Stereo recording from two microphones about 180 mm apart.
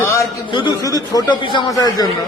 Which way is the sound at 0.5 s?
25° left (ahead or behind).